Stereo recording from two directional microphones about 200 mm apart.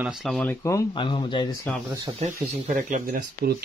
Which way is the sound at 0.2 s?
5° left (ahead or behind).